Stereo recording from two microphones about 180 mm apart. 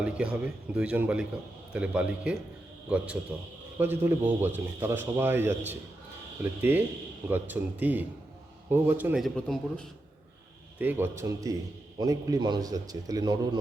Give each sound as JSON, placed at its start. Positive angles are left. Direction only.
{"t": 0.0, "sound": "a man's voice", "side_deg": -5}
{"t": 3.8, "sound": "a man's voice", "side_deg": -10}
{"t": 9.2, "sound": "a man's voice", "side_deg": 5}
{"t": 10.8, "sound": "a man's voice", "side_deg": -10}